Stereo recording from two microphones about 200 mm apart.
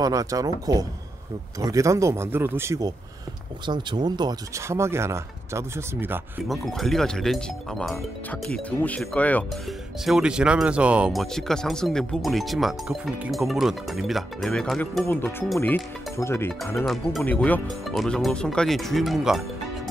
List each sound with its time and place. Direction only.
0.0 s speech: 15° right (ahead or behind)
6.5 s speech: centre (ahead or behind)
16.7 s speech: centre (ahead or behind)